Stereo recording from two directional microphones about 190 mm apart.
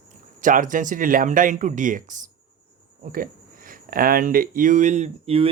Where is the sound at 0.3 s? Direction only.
45° right (ahead or behind).